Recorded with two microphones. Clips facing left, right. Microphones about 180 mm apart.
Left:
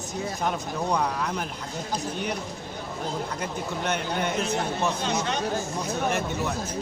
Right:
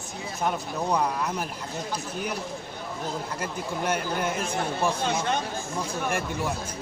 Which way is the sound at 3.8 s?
5° right (ahead or behind).